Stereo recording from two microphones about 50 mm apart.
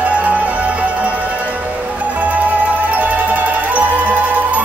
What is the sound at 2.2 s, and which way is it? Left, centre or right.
Music, right.